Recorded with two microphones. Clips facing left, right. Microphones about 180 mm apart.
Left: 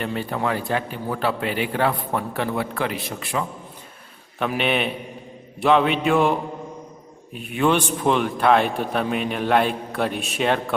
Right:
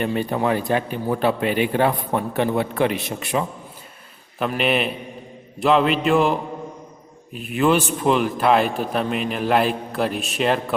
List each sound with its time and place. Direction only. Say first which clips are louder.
0.0 s a man's voice: right 4 dB; 20° right (ahead or behind)
4.4 s a man's voice: right 1 dB; centre (ahead or behind)
7.3 s a man's voice: right 2 dB; centre (ahead or behind)